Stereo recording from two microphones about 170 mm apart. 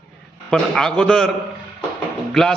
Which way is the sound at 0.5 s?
5° left (ahead or behind).